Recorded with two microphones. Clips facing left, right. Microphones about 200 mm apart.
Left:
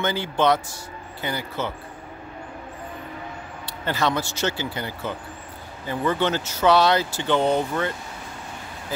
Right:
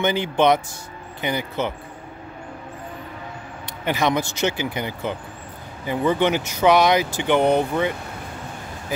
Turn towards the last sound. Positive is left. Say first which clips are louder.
# right 3 dB
turn(degrees=-15)  # may be behind; listen again after turning